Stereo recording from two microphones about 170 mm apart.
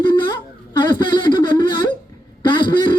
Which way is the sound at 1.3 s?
25° left (ahead or behind).